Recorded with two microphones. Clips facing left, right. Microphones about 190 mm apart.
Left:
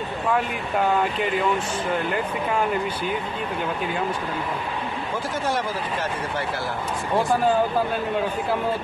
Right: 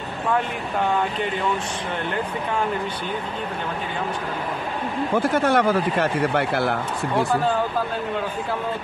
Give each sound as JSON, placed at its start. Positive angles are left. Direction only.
{"t": 5.1, "sound": "speech", "side_deg": -60}